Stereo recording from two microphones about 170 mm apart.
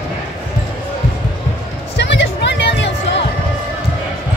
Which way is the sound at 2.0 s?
90° left.